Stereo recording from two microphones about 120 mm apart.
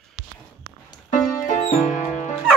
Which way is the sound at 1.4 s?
85° left.